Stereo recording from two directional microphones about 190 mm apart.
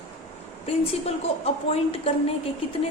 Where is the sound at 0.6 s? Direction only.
35° left (ahead or behind).